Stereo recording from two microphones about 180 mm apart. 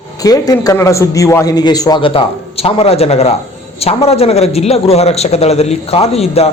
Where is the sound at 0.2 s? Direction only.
20° left (ahead or behind).